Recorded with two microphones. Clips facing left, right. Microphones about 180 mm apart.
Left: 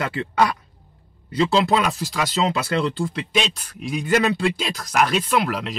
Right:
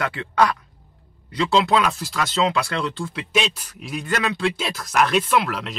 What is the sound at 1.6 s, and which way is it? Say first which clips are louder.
Speech: right 3 dB; centre (ahead or behind).